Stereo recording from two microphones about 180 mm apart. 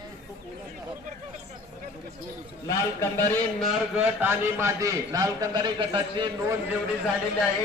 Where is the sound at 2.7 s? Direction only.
15° left (ahead or behind).